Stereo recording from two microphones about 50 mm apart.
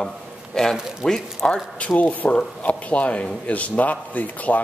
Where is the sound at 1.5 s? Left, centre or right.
Left.